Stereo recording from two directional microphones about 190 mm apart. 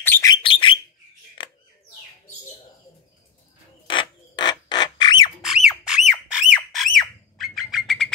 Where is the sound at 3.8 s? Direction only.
25° left (ahead or behind).